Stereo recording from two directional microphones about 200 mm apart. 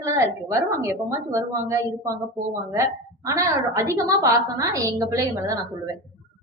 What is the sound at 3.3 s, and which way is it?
A woman's voice, 15° right (ahead or behind).